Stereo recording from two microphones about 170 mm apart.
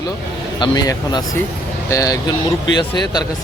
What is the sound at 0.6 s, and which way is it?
Mantra, 25° left (ahead or behind).